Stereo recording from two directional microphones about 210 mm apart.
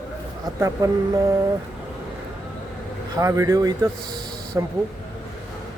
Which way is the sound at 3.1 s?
15° right (ahead or behind).